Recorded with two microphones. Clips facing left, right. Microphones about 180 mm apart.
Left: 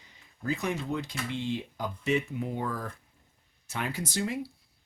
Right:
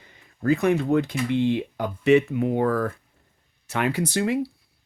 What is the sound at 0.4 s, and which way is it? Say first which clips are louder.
Speech: right 11 dB; 60° right (ahead or behind).